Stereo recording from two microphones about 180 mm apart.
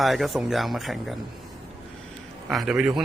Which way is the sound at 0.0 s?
Centre (ahead or behind).